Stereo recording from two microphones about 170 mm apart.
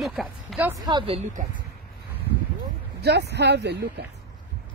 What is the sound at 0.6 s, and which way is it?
Speech, 25° right (ahead or behind).